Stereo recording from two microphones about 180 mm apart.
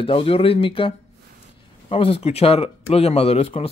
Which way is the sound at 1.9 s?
30° left (ahead or behind).